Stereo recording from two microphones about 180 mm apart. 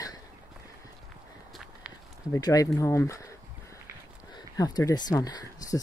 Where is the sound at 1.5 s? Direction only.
Centre (ahead or behind).